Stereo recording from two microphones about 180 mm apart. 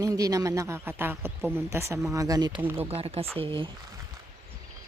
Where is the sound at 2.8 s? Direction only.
35° right (ahead or behind).